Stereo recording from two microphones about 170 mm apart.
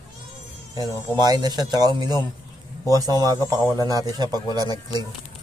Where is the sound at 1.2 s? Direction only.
25° right (ahead or behind).